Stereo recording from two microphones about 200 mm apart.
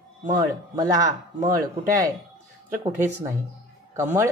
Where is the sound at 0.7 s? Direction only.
15° right (ahead or behind).